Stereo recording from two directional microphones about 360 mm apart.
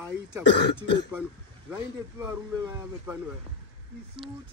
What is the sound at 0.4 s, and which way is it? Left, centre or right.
Speech, left.